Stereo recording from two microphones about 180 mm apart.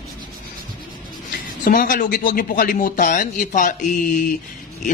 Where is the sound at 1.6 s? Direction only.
55° left (ahead or behind).